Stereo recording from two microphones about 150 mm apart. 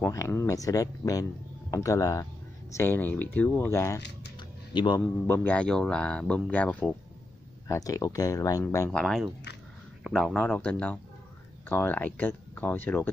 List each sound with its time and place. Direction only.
0.0 s speech: 15° left (ahead or behind)
4.4 s music: 30° left (ahead or behind)
5.0 s speech: 10° left (ahead or behind)
7.6 s speech: 20° left (ahead or behind)
8.9 s speech: centre (ahead or behind)